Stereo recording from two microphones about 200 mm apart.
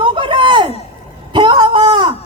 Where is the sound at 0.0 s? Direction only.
25° right (ahead or behind).